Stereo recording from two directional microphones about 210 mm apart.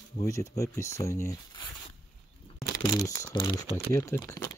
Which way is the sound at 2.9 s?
15° left (ahead or behind).